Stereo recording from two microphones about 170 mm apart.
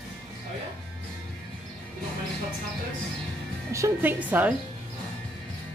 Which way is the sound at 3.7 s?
15° right (ahead or behind).